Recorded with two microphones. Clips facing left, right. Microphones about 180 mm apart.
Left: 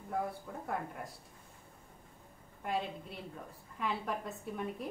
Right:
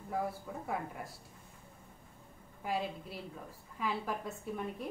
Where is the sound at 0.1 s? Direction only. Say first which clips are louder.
Even; 5° right (ahead or behind).